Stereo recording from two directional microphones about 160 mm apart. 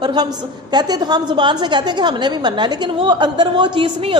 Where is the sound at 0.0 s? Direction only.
25° right (ahead or behind).